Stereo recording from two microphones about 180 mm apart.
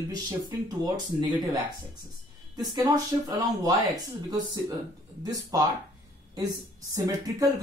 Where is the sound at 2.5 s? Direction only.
20° right (ahead or behind).